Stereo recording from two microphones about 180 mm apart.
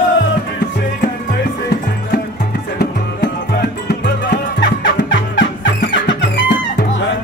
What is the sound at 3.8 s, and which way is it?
Music, 70° left (ahead or behind).